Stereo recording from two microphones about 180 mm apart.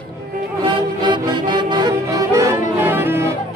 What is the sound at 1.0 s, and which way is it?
Music, 25° right (ahead or behind).